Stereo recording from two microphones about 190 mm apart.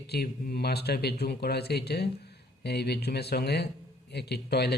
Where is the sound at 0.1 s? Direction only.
55° left (ahead or behind).